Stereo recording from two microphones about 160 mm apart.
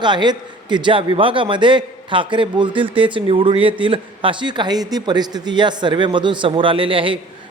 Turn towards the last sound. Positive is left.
turn(degrees=-35)  # may be behind; listen again after turning